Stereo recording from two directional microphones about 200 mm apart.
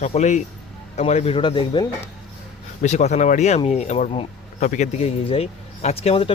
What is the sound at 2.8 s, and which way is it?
Speech, 35° left (ahead or behind).